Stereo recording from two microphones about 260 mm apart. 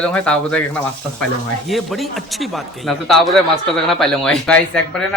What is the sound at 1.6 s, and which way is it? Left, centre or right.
Speech, centre.